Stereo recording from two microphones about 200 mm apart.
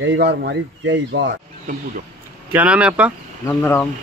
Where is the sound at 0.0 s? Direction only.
60° right (ahead or behind).